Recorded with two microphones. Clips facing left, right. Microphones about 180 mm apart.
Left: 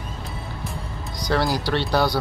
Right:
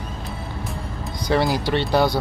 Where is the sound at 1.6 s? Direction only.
20° right (ahead or behind).